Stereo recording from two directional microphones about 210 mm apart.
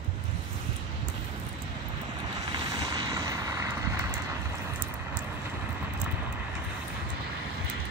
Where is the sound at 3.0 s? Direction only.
15° right (ahead or behind).